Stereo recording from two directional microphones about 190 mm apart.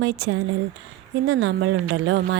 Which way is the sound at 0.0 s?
75° right (ahead or behind).